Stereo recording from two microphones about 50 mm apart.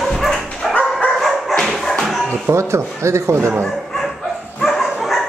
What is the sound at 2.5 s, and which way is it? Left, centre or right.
Speech, right.